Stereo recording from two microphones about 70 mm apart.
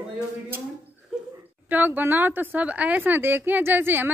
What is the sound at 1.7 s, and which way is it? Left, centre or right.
A woman's voice, right.